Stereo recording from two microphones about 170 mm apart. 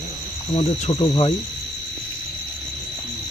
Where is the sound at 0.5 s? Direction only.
25° left (ahead or behind).